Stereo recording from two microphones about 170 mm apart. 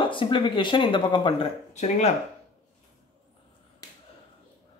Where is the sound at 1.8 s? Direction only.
40° left (ahead or behind).